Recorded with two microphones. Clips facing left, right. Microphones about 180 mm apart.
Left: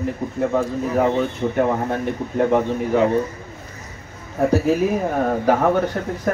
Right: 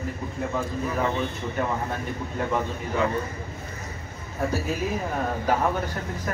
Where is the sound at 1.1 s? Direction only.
55° left (ahead or behind).